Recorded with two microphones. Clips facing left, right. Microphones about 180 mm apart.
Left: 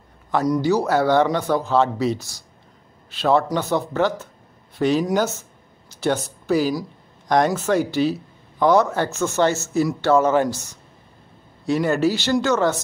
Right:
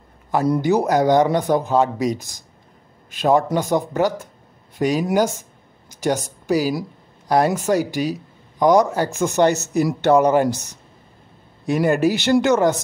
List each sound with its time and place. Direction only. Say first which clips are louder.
0.5 s a woman's voice: right 1 dB; 20° right (ahead or behind)